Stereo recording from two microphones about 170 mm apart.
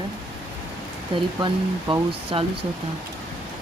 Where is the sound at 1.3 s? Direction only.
25° right (ahead or behind).